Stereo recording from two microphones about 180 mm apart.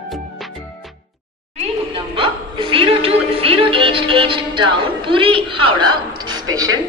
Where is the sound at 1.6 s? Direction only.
30° right (ahead or behind).